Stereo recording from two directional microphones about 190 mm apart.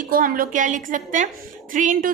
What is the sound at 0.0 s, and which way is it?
A woman's voice, 45° right (ahead or behind).